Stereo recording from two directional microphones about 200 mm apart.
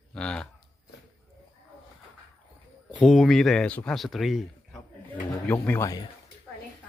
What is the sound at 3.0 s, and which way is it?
A man's voice, centre (ahead or behind).